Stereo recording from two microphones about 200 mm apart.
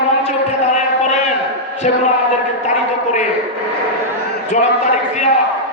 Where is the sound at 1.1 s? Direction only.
35° left (ahead or behind).